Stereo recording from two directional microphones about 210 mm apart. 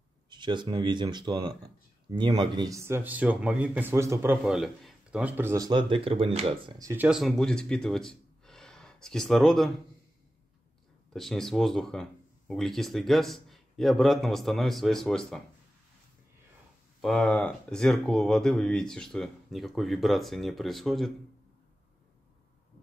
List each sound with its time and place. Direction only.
0.3 s a man's voice: 20° right (ahead or behind); by 9.7 s centre (ahead or behind)
11.1 s speech: centre (ahead or behind)
17.0 s speech: 5° left (ahead or behind)